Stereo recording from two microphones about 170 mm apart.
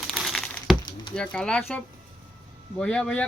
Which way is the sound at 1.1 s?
5° left (ahead or behind).